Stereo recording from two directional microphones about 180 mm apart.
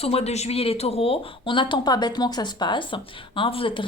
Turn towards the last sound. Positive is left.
turn(degrees=30)  # may be behind; listen again after turning